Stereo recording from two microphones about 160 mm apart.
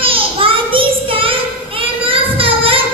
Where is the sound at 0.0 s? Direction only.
35° right (ahead or behind).